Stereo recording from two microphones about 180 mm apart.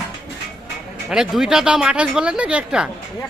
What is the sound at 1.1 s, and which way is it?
Speech, 5° right (ahead or behind).